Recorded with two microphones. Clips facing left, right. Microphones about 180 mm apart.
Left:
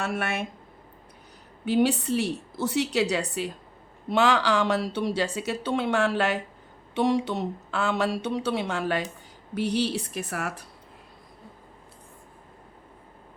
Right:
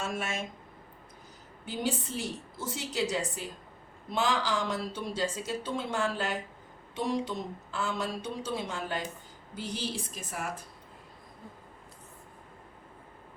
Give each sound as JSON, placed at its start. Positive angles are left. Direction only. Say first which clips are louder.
{"t": 0.0, "sound": "a woman's voice", "louder": "left 5 dB", "side_deg": 65}
{"t": 1.6, "sound": "speech", "louder": "left 10 dB", "side_deg": 70}